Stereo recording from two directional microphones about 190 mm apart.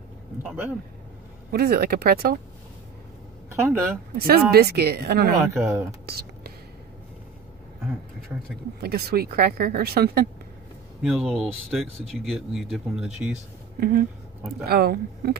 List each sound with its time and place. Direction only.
0.4 s speech: 10° right (ahead or behind)
1.5 s speech: 55° right (ahead or behind)
3.4 s speech: 15° right (ahead or behind)
4.2 s speech: 55° right (ahead or behind)
5.4 s speech: 10° right (ahead or behind)
6.0 s whispering: 55° right (ahead or behind)
8.8 s speech: 55° right (ahead or behind)
11.0 s speech: centre (ahead or behind)
13.7 s speech: 55° right (ahead or behind)